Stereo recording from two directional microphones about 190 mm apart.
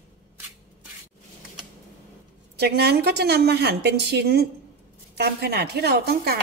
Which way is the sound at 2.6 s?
60° right (ahead or behind).